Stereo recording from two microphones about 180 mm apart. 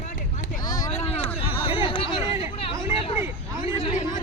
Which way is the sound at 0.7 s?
20° left (ahead or behind).